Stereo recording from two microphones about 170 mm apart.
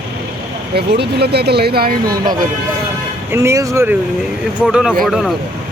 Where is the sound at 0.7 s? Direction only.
70° right (ahead or behind).